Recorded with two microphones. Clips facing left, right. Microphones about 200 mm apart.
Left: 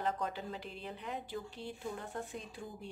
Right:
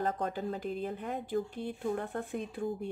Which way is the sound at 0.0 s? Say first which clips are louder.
Right 4 dB; 45° right (ahead or behind).